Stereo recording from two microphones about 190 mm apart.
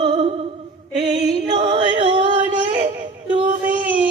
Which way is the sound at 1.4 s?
25° right (ahead or behind).